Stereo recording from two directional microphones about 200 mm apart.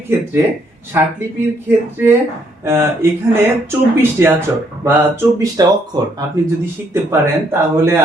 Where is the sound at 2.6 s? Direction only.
15° right (ahead or behind).